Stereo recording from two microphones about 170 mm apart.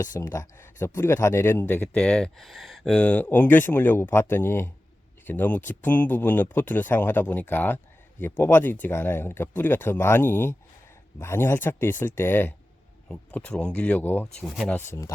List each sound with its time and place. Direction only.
0.0 s speech: 20° left (ahead or behind)
14.4 s speech: centre (ahead or behind)
14.8 s speech: 15° left (ahead or behind)